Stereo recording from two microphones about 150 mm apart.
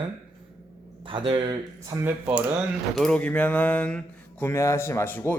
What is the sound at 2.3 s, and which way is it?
Speech, 10° right (ahead or behind).